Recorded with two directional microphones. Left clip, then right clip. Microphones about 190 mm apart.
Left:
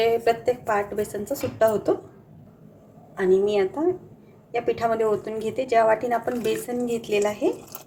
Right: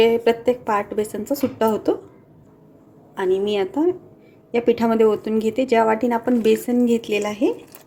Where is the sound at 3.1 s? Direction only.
45° right (ahead or behind).